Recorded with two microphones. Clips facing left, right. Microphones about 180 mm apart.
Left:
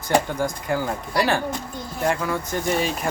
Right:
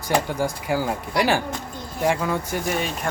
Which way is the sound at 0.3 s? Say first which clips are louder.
Even; 10° right (ahead or behind).